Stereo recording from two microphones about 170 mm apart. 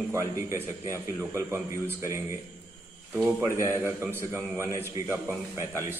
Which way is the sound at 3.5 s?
15° right (ahead or behind).